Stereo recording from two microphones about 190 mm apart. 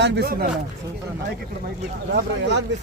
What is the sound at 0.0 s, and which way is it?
Speech, 55° right (ahead or behind).